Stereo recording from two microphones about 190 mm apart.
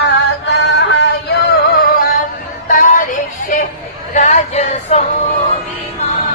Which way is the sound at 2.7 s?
45° left (ahead or behind).